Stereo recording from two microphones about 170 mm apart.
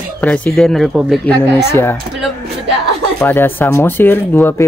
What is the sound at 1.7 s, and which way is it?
Speech, 15° left (ahead or behind).